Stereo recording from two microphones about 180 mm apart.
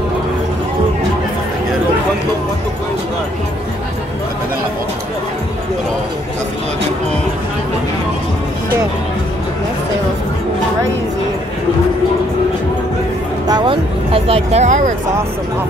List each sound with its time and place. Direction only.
13.5 s vehicle: 25° right (ahead or behind); by 15.0 s 40° right (ahead or behind)